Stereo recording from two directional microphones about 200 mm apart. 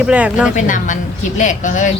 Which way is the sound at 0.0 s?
5° right (ahead or behind).